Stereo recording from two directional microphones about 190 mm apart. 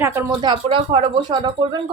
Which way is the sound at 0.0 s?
15° right (ahead or behind).